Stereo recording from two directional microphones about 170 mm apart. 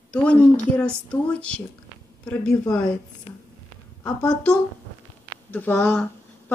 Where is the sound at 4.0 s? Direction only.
5° left (ahead or behind).